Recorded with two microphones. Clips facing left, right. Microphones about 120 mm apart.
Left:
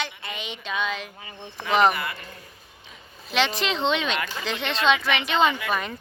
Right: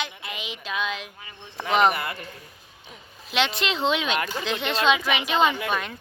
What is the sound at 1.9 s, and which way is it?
Speech, 40° right (ahead or behind).